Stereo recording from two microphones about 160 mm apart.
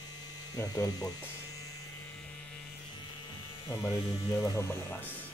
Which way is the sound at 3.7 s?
20° left (ahead or behind).